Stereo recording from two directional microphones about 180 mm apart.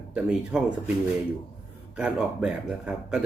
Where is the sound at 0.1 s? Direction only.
5° right (ahead or behind).